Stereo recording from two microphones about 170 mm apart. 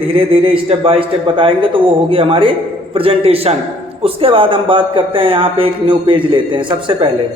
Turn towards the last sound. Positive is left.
turn(degrees=-30)  # may be behind; listen again after turning